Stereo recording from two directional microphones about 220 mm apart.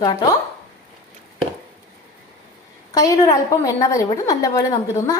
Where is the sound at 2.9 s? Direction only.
15° left (ahead or behind).